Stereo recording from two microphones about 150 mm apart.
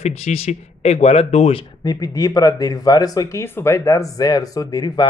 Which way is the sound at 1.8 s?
25° left (ahead or behind).